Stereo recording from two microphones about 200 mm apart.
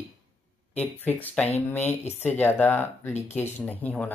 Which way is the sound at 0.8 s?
10° left (ahead or behind).